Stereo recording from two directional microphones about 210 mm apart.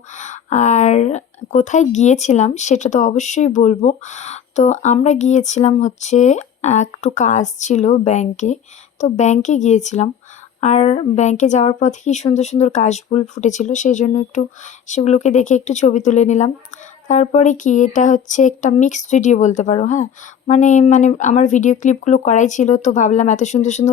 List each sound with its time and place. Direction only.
0.1 s speech: 35° left (ahead or behind)